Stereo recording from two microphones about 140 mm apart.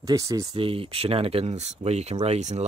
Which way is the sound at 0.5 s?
40° right (ahead or behind).